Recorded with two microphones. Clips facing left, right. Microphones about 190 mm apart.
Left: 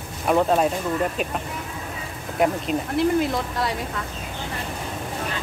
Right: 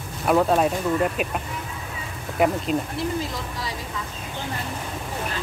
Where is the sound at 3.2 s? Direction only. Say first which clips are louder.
Left 7 dB; 65° left (ahead or behind).